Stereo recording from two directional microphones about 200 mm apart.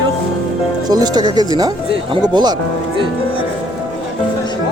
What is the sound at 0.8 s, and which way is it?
Speech, 20° right (ahead or behind).